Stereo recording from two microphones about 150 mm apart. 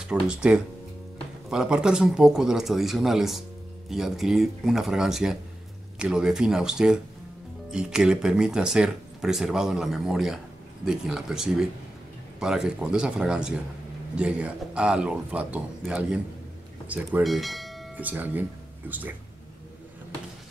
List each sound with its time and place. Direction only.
0.0 s a man's voice: 5° right (ahead or behind)
17.9 s a man's voice: 10° right (ahead or behind)